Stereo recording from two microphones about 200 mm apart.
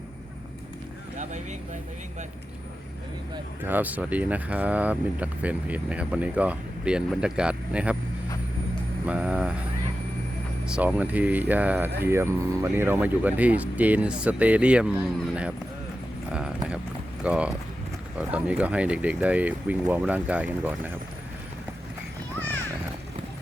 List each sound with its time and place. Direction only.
1.2 s speech: 35° right (ahead or behind)
3.6 s speech: 10° right (ahead or behind)
9.0 s speech: 5° right (ahead or behind)
10.7 s speech: 5° right (ahead or behind)
17.2 s speech: 5° right (ahead or behind)